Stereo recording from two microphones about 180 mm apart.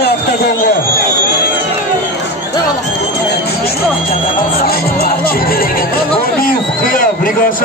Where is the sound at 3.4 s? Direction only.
60° left (ahead or behind).